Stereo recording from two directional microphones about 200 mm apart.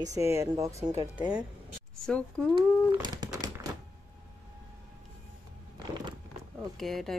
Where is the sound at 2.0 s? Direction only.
5° left (ahead or behind).